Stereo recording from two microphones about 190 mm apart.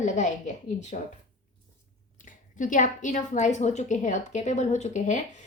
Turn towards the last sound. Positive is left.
turn(degrees=40)  # may be behind; listen again after turning